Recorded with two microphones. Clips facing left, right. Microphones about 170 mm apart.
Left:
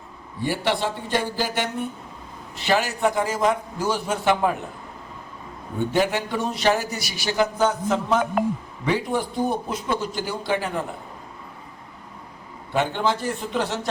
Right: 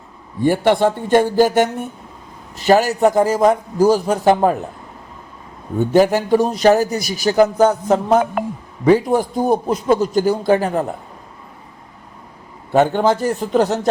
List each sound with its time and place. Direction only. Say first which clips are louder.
0.4 s a man's voice: right 10 dB; 50° right (ahead or behind)
5.8 s a man's voice: right 8 dB; 40° right (ahead or behind)
12.7 s a man's voice: right 8 dB; 45° right (ahead or behind)